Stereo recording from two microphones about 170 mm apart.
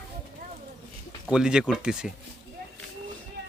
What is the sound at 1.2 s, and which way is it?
Speech, 5° right (ahead or behind).